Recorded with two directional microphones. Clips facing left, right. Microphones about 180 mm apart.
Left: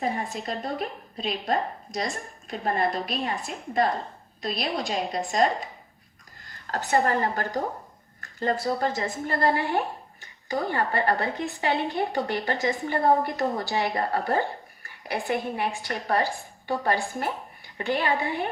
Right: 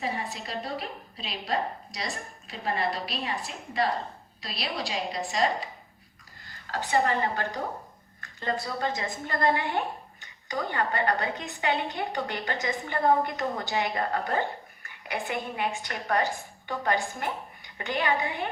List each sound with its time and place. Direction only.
0.0 s a woman's voice: 50° left (ahead or behind)
6.7 s a woman's voice: 45° left (ahead or behind)
8.2 s a sound: 40° left (ahead or behind)
8.6 s a woman's voice: 40° left (ahead or behind)